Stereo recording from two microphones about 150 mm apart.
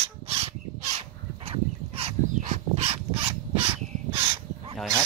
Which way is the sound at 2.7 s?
45° right (ahead or behind).